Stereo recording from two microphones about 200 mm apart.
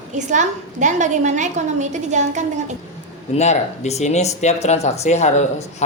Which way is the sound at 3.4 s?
35° left (ahead or behind).